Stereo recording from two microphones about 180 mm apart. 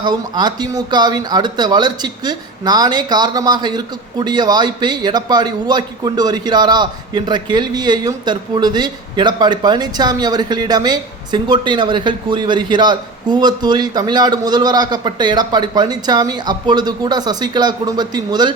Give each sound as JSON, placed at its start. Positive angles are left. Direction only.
{"t": 0.0, "sound": "speech", "side_deg": -25}